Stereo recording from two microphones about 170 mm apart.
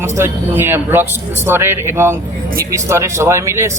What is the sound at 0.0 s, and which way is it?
A man's voice, 15° right (ahead or behind).